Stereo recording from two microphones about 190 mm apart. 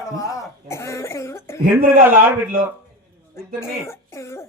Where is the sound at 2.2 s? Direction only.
10° right (ahead or behind).